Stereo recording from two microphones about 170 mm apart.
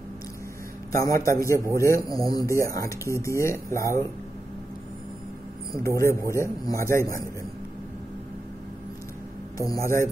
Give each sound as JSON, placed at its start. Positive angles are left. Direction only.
{"t": 1.0, "sound": "speech", "side_deg": 20}
{"t": 5.7, "sound": "speech", "side_deg": 15}
{"t": 9.6, "sound": "speech", "side_deg": 20}